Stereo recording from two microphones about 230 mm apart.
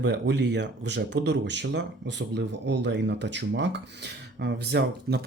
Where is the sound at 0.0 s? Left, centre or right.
Right.